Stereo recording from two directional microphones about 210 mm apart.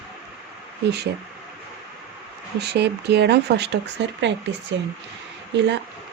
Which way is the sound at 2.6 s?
50° right (ahead or behind).